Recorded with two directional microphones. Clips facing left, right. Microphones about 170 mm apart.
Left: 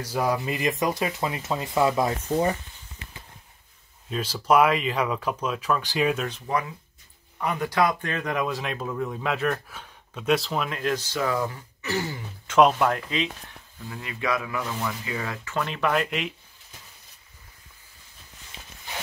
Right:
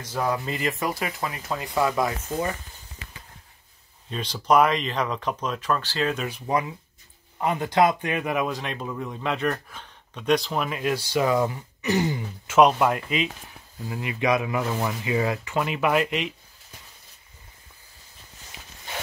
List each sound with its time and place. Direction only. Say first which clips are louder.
0.0 s speech: left 1 dB; 10° left (ahead or behind)
4.1 s speech: even; 5° left (ahead or behind)
7.3 s speech: right 3 dB; 25° right (ahead or behind)
12.4 s speech: right 1 dB; 5° right (ahead or behind)
13.8 s speech: right 5 dB; 20° right (ahead or behind); by 16.3 s centre (ahead or behind)